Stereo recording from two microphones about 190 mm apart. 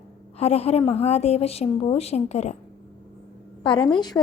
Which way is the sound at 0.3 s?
35° left (ahead or behind).